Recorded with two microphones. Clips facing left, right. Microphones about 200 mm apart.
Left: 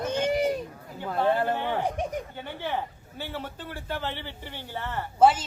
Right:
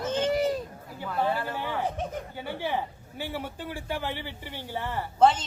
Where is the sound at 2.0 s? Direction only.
15° left (ahead or behind).